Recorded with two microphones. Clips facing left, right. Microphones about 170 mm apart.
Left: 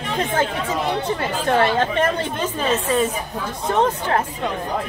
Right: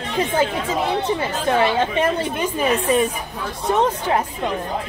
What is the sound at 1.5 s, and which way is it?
A woman's voice, 10° right (ahead or behind).